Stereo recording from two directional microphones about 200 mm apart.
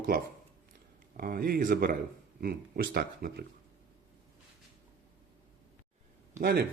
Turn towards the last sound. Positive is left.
turn(degrees=-50)  # may be behind; listen again after turning